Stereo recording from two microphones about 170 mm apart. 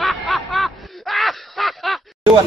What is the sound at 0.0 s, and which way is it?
Snicker, centre (ahead or behind).